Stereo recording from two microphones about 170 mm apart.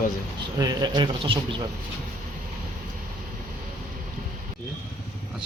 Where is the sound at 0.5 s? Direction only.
25° right (ahead or behind).